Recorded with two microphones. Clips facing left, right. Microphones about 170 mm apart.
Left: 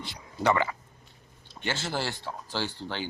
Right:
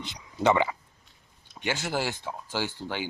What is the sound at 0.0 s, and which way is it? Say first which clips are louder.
Speech: right 2 dB; 20° right (ahead or behind).